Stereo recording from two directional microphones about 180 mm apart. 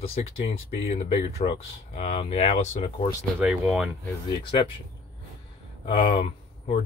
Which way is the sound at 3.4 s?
Centre (ahead or behind).